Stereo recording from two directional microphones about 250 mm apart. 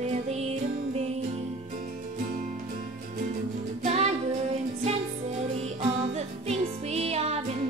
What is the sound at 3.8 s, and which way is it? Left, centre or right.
Music, right.